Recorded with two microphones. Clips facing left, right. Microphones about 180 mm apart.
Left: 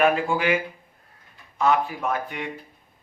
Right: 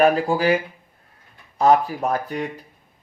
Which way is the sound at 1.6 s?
40° right (ahead or behind).